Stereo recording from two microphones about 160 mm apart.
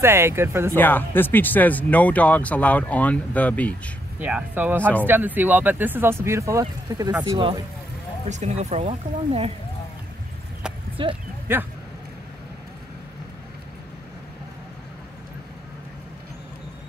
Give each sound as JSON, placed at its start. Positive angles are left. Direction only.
{"t": 0.0, "sound": "speech", "side_deg": -15}
{"t": 0.7, "sound": "speech", "side_deg": 10}
{"t": 4.2, "sound": "speech", "side_deg": -10}
{"t": 8.3, "sound": "speech", "side_deg": -45}
{"t": 11.0, "sound": "speech", "side_deg": -35}
{"t": 11.5, "sound": "speech", "side_deg": -15}